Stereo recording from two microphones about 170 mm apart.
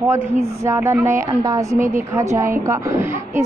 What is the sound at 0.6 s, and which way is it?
A woman's voice, 15° right (ahead or behind).